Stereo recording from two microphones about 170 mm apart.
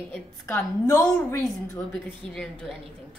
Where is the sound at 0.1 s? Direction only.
15° left (ahead or behind).